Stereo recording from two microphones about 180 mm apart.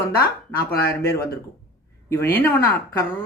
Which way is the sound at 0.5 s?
15° left (ahead or behind).